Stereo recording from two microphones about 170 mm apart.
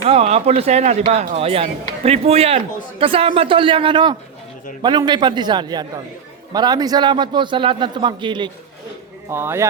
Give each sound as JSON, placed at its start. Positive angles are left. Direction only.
{"t": 0.0, "sound": "a man's voice", "side_deg": -35}
{"t": 9.3, "sound": "a man's voice", "side_deg": -15}